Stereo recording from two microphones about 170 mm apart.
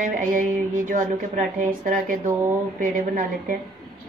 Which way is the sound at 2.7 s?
50° right (ahead or behind).